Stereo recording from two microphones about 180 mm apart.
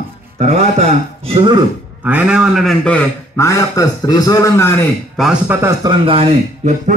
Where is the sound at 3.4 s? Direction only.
20° left (ahead or behind).